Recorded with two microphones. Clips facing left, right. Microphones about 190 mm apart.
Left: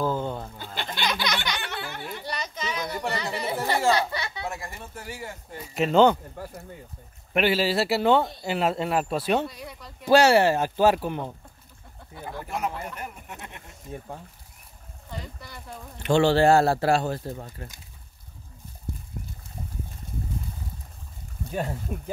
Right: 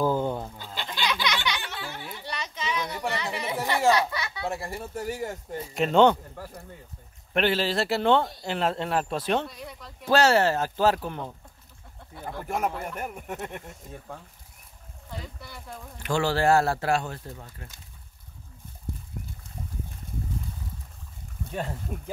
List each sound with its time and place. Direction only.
0.0 s goat: 15° right (ahead or behind)
0.6 s a sound: 55° left (ahead or behind)
1.7 s a sound: 60° left (ahead or behind)
2.2 s a sound: 40° left (ahead or behind)
4.4 s speech: 30° right (ahead or behind)
5.8 s speech: centre (ahead or behind)
7.3 s speech: 10° left (ahead or behind)
10.0 s speech: 15° left (ahead or behind)
12.4 s speech: 50° right (ahead or behind)
15.0 s speech: 5° right (ahead or behind)
16.0 s speech: 25° left (ahead or behind)
21.5 s speech: 5° left (ahead or behind)